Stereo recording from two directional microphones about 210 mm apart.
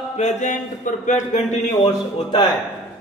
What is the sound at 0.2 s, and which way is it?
A man's voice, 35° left (ahead or behind).